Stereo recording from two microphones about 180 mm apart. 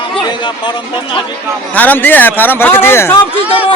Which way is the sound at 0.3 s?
25° left (ahead or behind).